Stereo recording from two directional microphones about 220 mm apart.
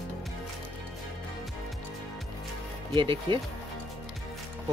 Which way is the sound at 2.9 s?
20° right (ahead or behind).